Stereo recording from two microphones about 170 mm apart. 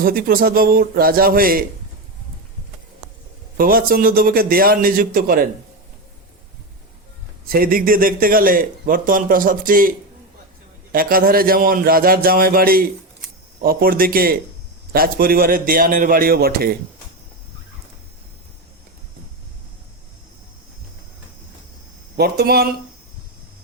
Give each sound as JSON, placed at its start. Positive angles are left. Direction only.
{"t": 0.0, "sound": "speech", "side_deg": -60}
{"t": 3.6, "sound": "speech", "side_deg": -60}
{"t": 7.4, "sound": "speech", "side_deg": -60}
{"t": 10.9, "sound": "speech", "side_deg": -60}
{"t": 22.2, "sound": "speech", "side_deg": -70}